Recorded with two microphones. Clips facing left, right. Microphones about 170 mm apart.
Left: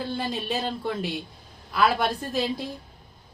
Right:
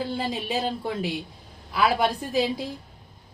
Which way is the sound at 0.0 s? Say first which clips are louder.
Right 1 dB; 5° right (ahead or behind).